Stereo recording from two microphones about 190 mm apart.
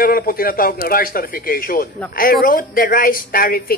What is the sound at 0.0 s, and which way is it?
A woman's voice, 50° left (ahead or behind).